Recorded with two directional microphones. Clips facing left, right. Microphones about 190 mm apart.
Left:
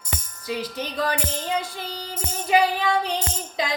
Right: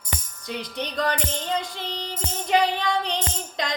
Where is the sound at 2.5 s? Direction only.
5° left (ahead or behind).